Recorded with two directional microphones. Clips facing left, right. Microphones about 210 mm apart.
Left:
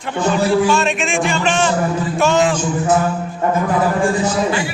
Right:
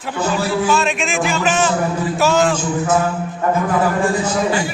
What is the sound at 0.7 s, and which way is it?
Speech, centre (ahead or behind).